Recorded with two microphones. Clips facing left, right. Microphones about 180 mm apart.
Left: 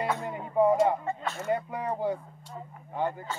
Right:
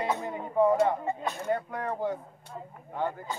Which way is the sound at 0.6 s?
10° left (ahead or behind).